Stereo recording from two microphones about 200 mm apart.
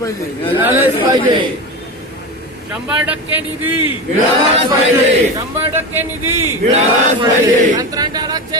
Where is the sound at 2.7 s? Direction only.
10° right (ahead or behind).